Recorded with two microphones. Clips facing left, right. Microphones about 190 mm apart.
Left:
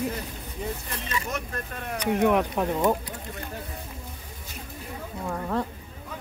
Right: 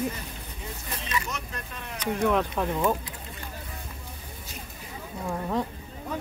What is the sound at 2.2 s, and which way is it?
Speech, 15° left (ahead or behind).